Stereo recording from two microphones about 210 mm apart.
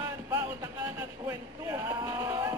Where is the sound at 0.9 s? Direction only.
10° right (ahead or behind).